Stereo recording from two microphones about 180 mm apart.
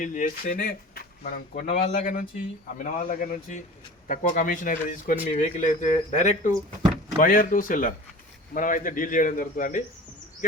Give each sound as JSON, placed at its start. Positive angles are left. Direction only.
{"t": 0.0, "sound": "speech", "side_deg": 45}
{"t": 1.6, "sound": "speech", "side_deg": 40}
{"t": 2.7, "sound": "speech", "side_deg": 50}